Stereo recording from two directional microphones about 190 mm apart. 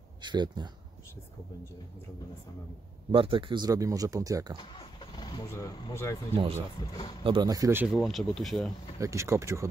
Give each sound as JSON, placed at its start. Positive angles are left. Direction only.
{"t": 0.2, "sound": "speech", "side_deg": -20}
{"t": 3.1, "sound": "speech", "side_deg": -25}
{"t": 4.6, "sound": "speech", "side_deg": 25}
{"t": 6.3, "sound": "speech", "side_deg": -30}
{"t": 7.8, "sound": "speech", "side_deg": 0}
{"t": 9.0, "sound": "speech", "side_deg": -15}